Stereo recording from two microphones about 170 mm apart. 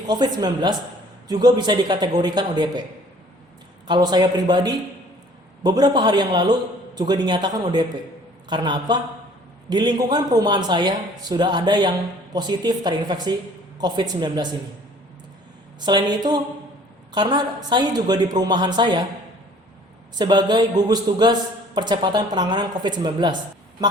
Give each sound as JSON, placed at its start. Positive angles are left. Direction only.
{"t": 0.1, "sound": "a man's voice", "side_deg": -25}
{"t": 3.8, "sound": "a man's voice", "side_deg": -25}
{"t": 15.8, "sound": "a man's voice", "side_deg": -25}
{"t": 20.1, "sound": "a man's voice", "side_deg": -25}